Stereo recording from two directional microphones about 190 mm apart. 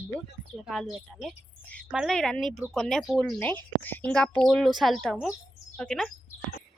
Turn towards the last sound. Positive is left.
turn(degrees=5)  # may be behind; listen again after turning